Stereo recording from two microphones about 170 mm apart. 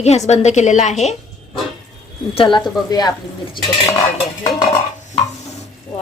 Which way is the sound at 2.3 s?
30° left (ahead or behind).